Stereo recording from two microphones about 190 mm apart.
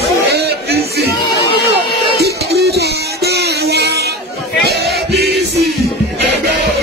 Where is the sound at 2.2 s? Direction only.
60° right (ahead or behind).